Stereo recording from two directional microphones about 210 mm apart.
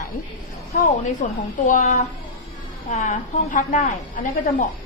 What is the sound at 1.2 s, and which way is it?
A woman's voice, 40° left (ahead or behind).